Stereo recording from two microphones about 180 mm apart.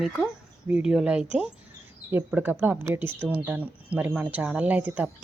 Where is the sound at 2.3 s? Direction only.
10° right (ahead or behind).